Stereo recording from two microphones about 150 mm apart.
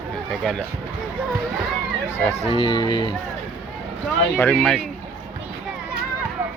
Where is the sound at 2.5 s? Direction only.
35° left (ahead or behind).